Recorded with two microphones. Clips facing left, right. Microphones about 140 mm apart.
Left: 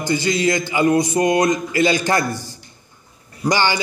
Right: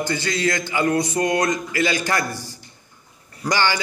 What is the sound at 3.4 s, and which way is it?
Speech, 15° left (ahead or behind).